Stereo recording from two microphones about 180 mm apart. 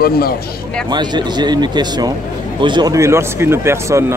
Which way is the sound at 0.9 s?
25° right (ahead or behind).